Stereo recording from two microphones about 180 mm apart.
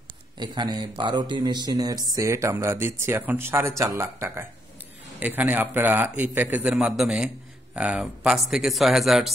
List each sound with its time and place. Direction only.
0.4 s speech: 25° right (ahead or behind); by 9.3 s centre (ahead or behind)